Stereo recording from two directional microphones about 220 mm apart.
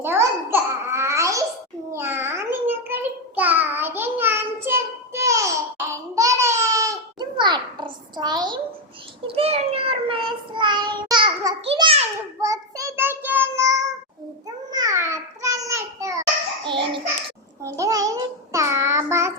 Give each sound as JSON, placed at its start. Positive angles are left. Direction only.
{"t": 0.0, "sound": "babbling", "side_deg": -10}
{"t": 1.9, "sound": "a sound", "side_deg": -10}
{"t": 9.2, "sound": "child singing", "side_deg": -25}
{"t": 12.4, "sound": "child singing", "side_deg": -15}
{"t": 14.4, "sound": "babbling", "side_deg": -15}
{"t": 16.6, "sound": "a sound", "side_deg": -20}
{"t": 17.6, "sound": "child singing", "side_deg": -15}